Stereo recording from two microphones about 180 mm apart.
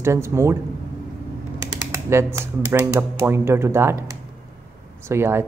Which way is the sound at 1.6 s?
15° right (ahead or behind).